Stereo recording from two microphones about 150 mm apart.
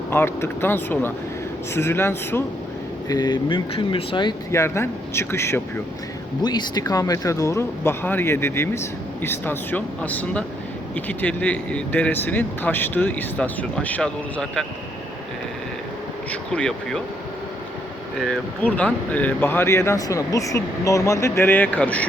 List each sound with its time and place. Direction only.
0.1 s speech: 15° left (ahead or behind)
3.1 s speech: 30° left (ahead or behind)
4.5 s speech: 15° left (ahead or behind)
6.4 s speech: 30° left (ahead or behind); by 14.6 s 5° left (ahead or behind)
16.3 s speech: 5° left (ahead or behind)
18.6 s speech: 10° left (ahead or behind)